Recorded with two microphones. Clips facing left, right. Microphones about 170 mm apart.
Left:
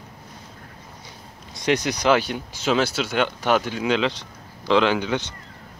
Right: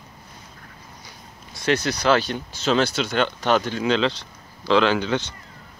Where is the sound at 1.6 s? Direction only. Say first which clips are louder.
Even; 15° left (ahead or behind).